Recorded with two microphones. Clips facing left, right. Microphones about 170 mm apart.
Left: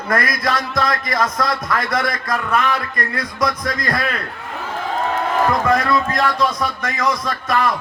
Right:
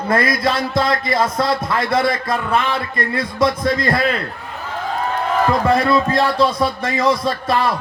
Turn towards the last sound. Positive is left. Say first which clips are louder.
# right 2 dB
turn(degrees=-30)  # may be behind; listen again after turning